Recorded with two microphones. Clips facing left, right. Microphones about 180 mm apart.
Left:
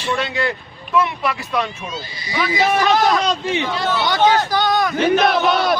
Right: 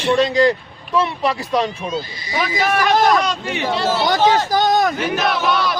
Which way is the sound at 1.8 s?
45° right (ahead or behind).